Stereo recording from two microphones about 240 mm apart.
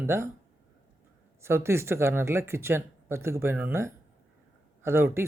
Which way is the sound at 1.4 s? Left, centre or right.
Centre.